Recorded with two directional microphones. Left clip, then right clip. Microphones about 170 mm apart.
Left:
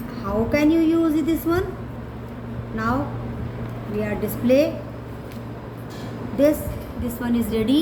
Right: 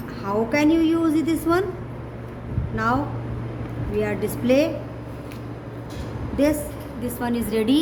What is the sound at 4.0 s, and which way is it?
Speech, 40° right (ahead or behind).